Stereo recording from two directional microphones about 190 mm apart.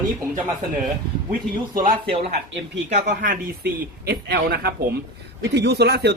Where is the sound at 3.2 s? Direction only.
50° right (ahead or behind).